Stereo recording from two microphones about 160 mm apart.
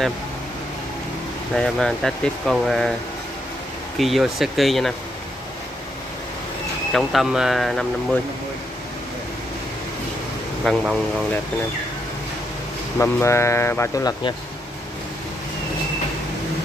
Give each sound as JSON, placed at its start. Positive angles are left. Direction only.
{"t": 1.5, "sound": "speech", "side_deg": 5}
{"t": 4.0, "sound": "speech", "side_deg": 0}
{"t": 6.9, "sound": "speech", "side_deg": 0}
{"t": 10.6, "sound": "speech", "side_deg": 0}
{"t": 13.0, "sound": "speech", "side_deg": 15}